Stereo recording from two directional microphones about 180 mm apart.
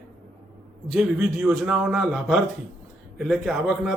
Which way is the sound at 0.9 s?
Centre (ahead or behind).